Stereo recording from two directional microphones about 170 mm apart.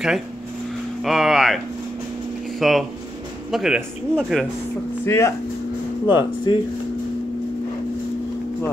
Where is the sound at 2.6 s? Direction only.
Centre (ahead or behind).